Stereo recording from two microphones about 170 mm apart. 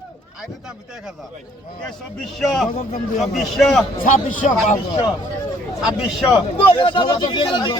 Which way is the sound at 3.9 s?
50° left (ahead or behind).